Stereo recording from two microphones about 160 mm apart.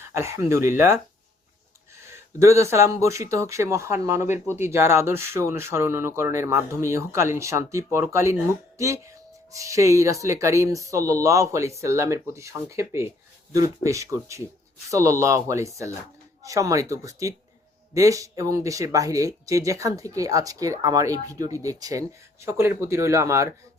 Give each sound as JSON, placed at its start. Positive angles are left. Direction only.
{"t": 0.0, "sound": "speech", "side_deg": -15}
{"t": 2.0, "sound": "speech", "side_deg": -15}